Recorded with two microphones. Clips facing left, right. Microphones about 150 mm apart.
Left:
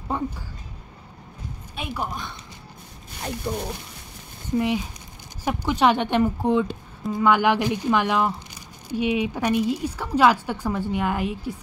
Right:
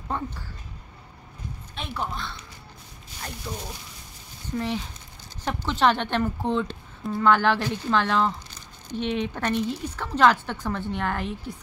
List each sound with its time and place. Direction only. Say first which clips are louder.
0.1 s a sound: left 4 dB; 15° left (ahead or behind)
1.8 s a woman's voice: left 2 dB; 10° left (ahead or behind)
3.5 s speech: left 7 dB; 55° left (ahead or behind)
4.6 s a woman's voice: left 5 dB; 15° left (ahead or behind)